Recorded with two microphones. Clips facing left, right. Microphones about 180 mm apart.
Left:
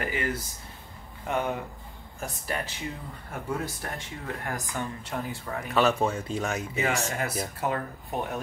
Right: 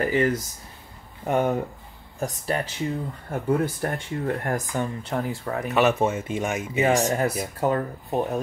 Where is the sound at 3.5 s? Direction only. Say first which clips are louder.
Right 9 dB; 55° right (ahead or behind).